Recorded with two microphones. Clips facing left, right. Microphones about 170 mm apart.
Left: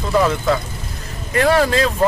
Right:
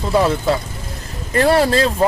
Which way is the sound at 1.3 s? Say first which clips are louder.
Right 1 dB; 35° right (ahead or behind).